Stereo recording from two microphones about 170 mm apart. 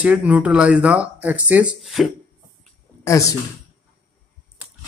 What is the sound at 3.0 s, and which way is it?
Speech, 20° left (ahead or behind).